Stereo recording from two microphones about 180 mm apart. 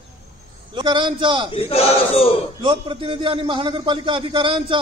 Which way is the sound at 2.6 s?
30° right (ahead or behind).